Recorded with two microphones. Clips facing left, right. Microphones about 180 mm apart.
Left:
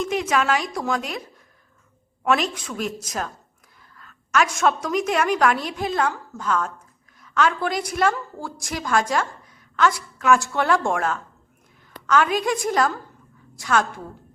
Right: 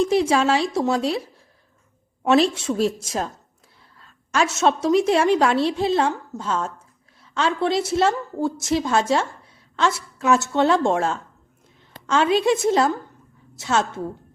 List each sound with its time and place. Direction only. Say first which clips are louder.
0.0 s a woman's voice: right 4 dB; 35° right (ahead or behind)